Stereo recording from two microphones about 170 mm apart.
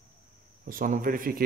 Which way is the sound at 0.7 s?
55° right (ahead or behind).